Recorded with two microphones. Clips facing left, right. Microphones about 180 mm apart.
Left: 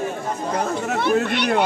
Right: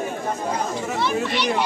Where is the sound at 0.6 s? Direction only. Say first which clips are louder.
Left 2 dB; 60° left (ahead or behind).